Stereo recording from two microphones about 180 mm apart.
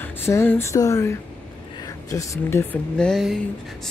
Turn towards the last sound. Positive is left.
turn(degrees=0)  # may be behind; listen again after turning